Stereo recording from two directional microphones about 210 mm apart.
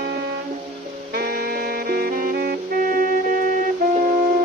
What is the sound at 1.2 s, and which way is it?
Music, 45° right (ahead or behind).